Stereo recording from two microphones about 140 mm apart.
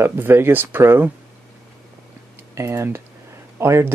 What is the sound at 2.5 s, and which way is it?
Speech, 20° right (ahead or behind).